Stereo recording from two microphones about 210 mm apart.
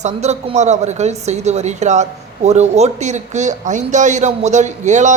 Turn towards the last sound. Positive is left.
turn(degrees=-35)  # may be behind; listen again after turning